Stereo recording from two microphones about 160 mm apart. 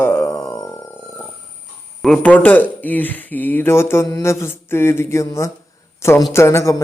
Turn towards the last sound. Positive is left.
turn(degrees=15)  # may be behind; listen again after turning